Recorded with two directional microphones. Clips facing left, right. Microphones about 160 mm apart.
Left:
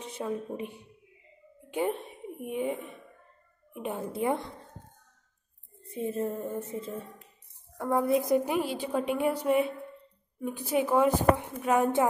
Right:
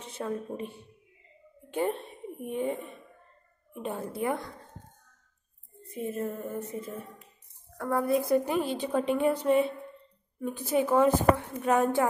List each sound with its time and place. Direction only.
0.0 s a woman's voice: 15° left (ahead or behind)
5.9 s a woman's voice: 30° left (ahead or behind)
7.7 s a woman's voice: 20° left (ahead or behind)